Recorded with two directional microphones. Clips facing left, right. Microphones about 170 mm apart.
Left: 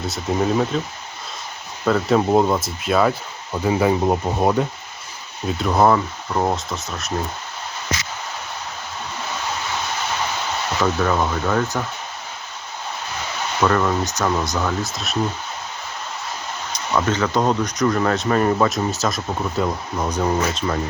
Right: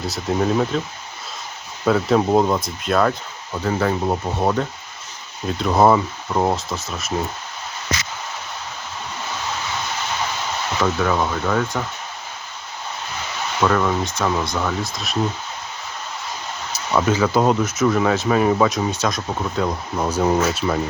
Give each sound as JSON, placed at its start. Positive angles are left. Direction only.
{"t": 0.1, "sound": "speech", "side_deg": 0}
{"t": 1.8, "sound": "speech", "side_deg": 0}
{"t": 5.5, "sound": "speech", "side_deg": 0}
{"t": 10.8, "sound": "speech", "side_deg": 0}
{"t": 13.6, "sound": "speech", "side_deg": 0}
{"t": 16.7, "sound": "speech", "side_deg": -10}